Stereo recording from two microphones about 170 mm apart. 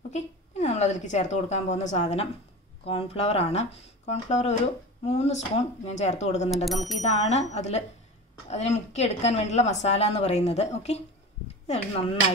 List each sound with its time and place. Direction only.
0.1 s a woman's voice: 40° left (ahead or behind)
6.5 s speech: centre (ahead or behind)
7.0 s speech: 40° left (ahead or behind)